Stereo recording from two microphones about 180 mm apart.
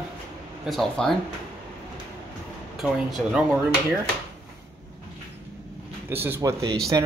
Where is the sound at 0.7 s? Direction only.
Centre (ahead or behind).